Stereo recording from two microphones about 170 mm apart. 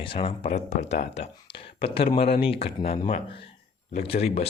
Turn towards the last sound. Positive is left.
turn(degrees=35)  # may be behind; listen again after turning